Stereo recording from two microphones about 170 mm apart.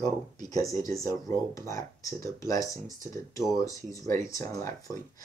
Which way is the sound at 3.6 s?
20° left (ahead or behind).